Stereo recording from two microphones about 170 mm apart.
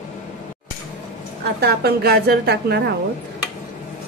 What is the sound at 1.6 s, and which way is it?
A woman's voice, 65° right (ahead or behind).